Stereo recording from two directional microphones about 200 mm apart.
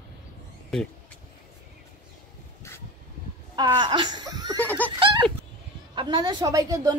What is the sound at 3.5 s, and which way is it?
Speech, 25° right (ahead or behind).